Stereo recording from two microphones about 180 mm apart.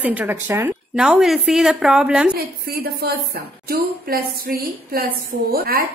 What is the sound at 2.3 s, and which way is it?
A woman's voice, 55° right (ahead or behind).